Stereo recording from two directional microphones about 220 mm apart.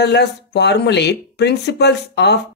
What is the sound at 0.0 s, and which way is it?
Speech, 50° left (ahead or behind).